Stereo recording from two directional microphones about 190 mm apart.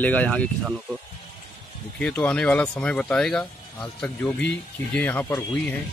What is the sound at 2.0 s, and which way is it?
Speech, 5° left (ahead or behind).